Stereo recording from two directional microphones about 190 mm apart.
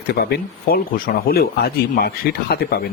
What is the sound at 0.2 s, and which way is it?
A man's voice, 55° left (ahead or behind).